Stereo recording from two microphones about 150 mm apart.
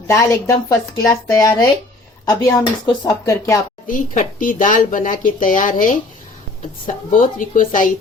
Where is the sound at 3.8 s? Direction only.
60° left (ahead or behind).